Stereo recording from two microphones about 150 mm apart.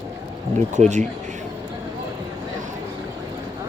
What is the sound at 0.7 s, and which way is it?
Speech, 50° right (ahead or behind).